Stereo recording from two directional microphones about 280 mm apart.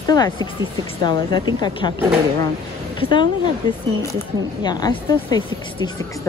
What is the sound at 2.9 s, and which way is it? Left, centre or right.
Speech, centre.